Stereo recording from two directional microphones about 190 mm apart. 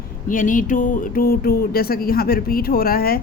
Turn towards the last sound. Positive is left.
turn(degrees=50)  # may be behind; listen again after turning